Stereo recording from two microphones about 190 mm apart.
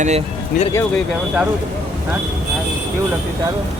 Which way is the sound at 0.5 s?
50° left (ahead or behind).